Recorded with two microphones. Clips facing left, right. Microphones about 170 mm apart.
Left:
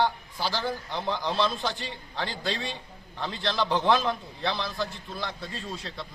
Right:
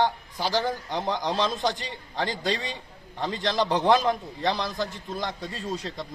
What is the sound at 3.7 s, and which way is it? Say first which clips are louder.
Speech: even; 20° right (ahead or behind).